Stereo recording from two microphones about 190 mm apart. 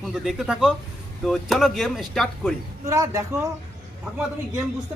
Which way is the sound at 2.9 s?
15° right (ahead or behind).